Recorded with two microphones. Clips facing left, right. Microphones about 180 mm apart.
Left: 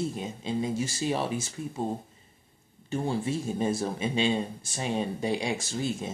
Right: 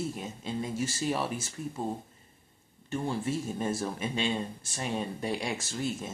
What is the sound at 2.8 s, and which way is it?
Speech, 30° left (ahead or behind).